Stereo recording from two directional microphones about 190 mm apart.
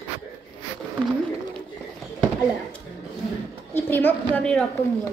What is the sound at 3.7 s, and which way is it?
Speech, 10° left (ahead or behind).